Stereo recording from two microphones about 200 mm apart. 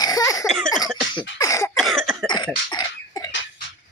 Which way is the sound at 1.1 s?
15° left (ahead or behind).